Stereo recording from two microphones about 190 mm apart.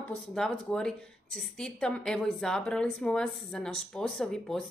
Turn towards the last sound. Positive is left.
turn(degrees=0)  # may be behind; listen again after turning